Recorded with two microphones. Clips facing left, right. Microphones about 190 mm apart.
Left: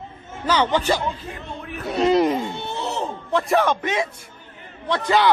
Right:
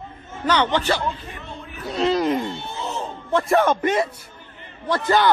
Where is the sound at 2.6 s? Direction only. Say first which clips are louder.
Left 3 dB; 70° left (ahead or behind).